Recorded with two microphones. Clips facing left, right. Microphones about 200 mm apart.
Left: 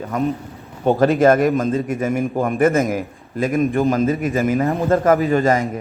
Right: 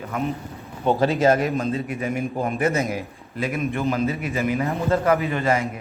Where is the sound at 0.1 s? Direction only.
40° left (ahead or behind).